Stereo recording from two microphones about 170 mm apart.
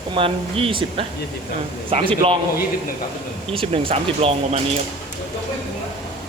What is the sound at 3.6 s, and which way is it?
Speech, 35° right (ahead or behind).